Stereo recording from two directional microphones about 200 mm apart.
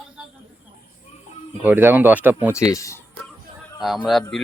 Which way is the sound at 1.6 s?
10° right (ahead or behind).